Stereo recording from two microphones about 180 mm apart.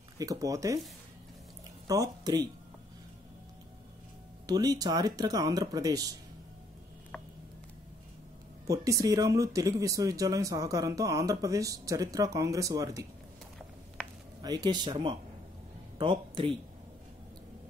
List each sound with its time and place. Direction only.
0.2 s speech: 20° right (ahead or behind)
1.9 s speech: 20° right (ahead or behind)
4.5 s speech: 20° right (ahead or behind)
8.6 s speech: 20° right (ahead or behind)
14.4 s speech: 20° right (ahead or behind)